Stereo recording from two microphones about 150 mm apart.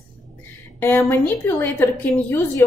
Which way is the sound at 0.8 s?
15° left (ahead or behind).